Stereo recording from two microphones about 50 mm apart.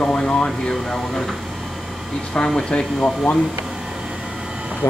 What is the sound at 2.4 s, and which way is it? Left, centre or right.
Speech, centre.